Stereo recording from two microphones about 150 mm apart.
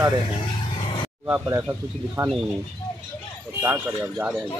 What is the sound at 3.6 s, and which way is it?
Speech, 10° right (ahead or behind).